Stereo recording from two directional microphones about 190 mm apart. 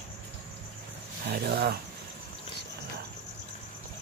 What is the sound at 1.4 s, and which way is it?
Speech, 55° right (ahead or behind).